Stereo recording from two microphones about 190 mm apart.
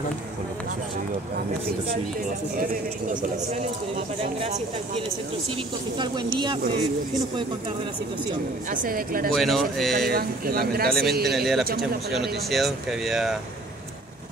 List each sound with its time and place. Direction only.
2.7 s a man's voice: 45° right (ahead or behind)
4.2 s speech: 30° right (ahead or behind)
8.6 s a man's voice: 45° right (ahead or behind)
9.3 s speech: centre (ahead or behind)
10.0 s a man's voice: 50° right (ahead or behind)
11.3 s speech: centre (ahead or behind)
11.6 s a man's voice: 50° right (ahead or behind)
12.1 s speech: centre (ahead or behind)